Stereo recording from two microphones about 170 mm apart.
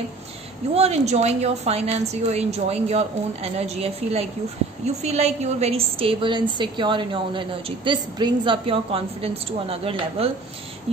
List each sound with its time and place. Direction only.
0.7 s a woman's voice: 40° right (ahead or behind)